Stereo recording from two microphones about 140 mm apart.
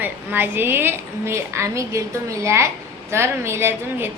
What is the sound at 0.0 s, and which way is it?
A woman's voice, 15° right (ahead or behind).